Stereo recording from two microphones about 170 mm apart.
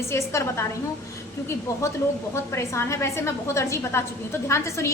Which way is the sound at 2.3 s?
15° left (ahead or behind).